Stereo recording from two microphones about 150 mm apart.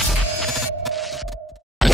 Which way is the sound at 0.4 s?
Centre (ahead or behind).